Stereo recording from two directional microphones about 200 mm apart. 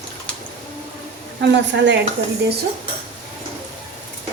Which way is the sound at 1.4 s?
60° right (ahead or behind).